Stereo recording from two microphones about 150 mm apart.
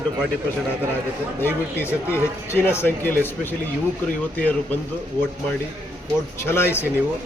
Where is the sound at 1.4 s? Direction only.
15° left (ahead or behind).